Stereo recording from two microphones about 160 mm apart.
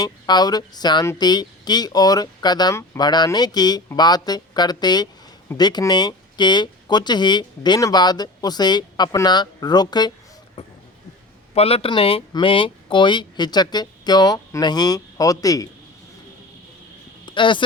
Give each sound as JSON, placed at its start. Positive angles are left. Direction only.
{"t": 0.0, "sound": "speech", "side_deg": 25}
{"t": 11.5, "sound": "speech", "side_deg": 40}
{"t": 17.2, "sound": "a sound", "side_deg": 30}